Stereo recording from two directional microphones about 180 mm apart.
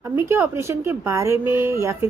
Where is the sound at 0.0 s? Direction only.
15° right (ahead or behind).